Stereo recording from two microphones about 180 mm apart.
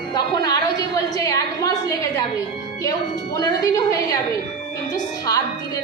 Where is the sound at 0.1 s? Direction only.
20° left (ahead or behind).